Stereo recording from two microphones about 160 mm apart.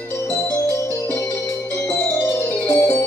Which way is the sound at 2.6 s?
15° left (ahead or behind).